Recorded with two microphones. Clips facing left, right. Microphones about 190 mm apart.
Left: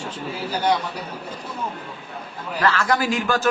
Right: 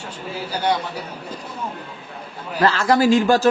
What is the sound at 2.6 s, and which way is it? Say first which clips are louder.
Speech: right 4 dB; 30° right (ahead or behind).